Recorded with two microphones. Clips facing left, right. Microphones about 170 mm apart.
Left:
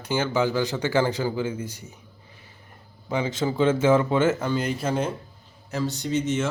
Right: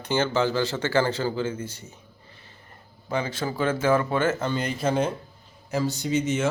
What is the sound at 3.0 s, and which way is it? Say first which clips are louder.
Speech: left 2 dB; 15° left (ahead or behind).